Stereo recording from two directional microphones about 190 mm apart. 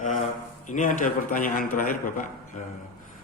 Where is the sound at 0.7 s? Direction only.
45° left (ahead or behind).